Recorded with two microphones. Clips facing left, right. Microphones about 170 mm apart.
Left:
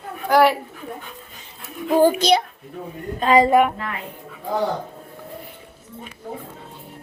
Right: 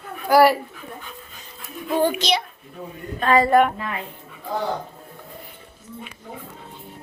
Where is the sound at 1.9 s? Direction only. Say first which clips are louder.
Left 5 dB; 40° left (ahead or behind).